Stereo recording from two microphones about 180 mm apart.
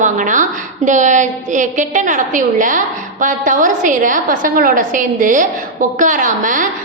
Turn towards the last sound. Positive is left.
turn(degrees=-45)  # may be behind; listen again after turning